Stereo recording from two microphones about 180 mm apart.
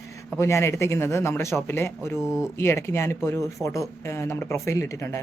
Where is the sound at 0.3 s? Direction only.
15° left (ahead or behind).